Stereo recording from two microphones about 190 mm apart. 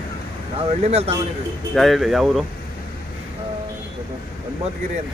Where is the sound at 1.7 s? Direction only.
Centre (ahead or behind).